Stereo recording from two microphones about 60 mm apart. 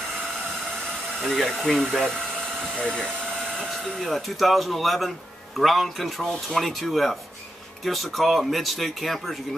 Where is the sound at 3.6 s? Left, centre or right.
Centre.